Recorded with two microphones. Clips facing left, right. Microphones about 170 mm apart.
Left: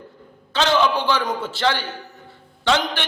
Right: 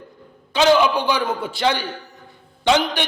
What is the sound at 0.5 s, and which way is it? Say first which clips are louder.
A man's voice: right 3 dB; 10° right (ahead or behind).